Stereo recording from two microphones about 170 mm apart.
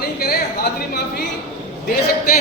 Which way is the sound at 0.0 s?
65° left (ahead or behind).